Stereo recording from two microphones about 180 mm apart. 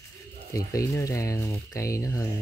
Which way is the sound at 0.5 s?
15° left (ahead or behind).